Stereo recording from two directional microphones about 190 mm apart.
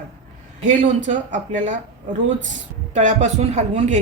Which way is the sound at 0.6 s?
40° right (ahead or behind).